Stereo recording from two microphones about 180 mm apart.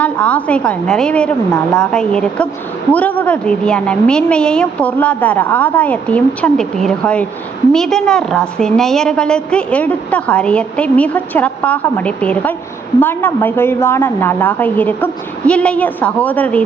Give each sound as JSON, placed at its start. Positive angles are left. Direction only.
{"t": 0.0, "sound": "a woman's voice", "side_deg": 5}